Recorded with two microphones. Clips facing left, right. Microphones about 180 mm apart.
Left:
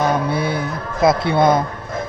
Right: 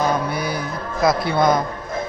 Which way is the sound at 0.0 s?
25° left (ahead or behind).